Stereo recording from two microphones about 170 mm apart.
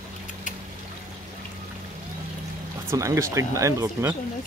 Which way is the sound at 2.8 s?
15° right (ahead or behind).